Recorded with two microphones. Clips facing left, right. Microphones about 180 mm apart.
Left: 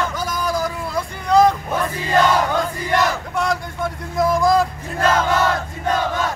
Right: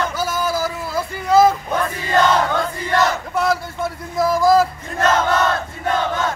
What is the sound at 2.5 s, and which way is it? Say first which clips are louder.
Crowd: even; 15° left (ahead or behind).